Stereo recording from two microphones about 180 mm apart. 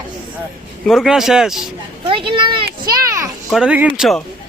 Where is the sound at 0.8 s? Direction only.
Centre (ahead or behind).